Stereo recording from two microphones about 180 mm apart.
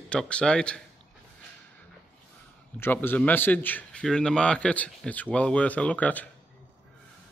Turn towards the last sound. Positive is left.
turn(degrees=10)  # may be behind; listen again after turning